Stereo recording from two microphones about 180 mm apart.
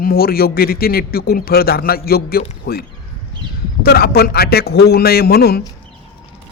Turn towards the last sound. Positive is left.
turn(degrees=60)  # may be behind; listen again after turning